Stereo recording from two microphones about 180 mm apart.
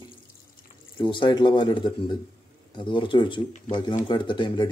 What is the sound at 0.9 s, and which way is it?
Speech, 25° left (ahead or behind).